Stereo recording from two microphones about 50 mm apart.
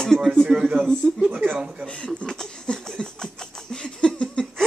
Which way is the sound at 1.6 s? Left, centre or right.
Right.